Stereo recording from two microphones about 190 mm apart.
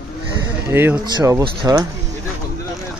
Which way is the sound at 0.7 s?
10° right (ahead or behind).